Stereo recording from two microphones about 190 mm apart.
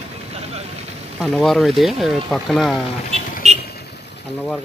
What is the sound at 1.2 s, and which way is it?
Speech, centre (ahead or behind).